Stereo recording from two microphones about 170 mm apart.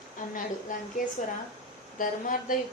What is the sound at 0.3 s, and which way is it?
A woman's voice, 50° left (ahead or behind).